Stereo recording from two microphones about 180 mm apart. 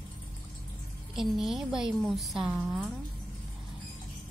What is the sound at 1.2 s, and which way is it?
A woman's voice, centre (ahead or behind).